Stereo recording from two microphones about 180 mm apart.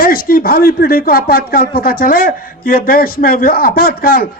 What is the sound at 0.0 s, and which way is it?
Speech, 55° left (ahead or behind).